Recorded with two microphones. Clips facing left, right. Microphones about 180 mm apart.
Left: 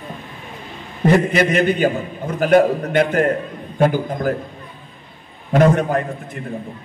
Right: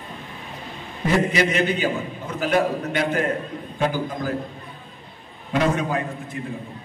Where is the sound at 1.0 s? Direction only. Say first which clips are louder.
Left 5 dB; 55° left (ahead or behind).